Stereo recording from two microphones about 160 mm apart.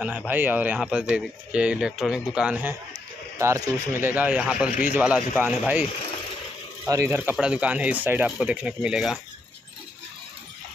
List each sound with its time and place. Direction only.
0.0 s speech: 10° right (ahead or behind)
2.9 s speech: 20° right (ahead or behind)
6.9 s speech: 15° right (ahead or behind)